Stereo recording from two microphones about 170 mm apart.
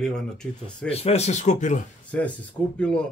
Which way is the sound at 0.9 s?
40° left (ahead or behind).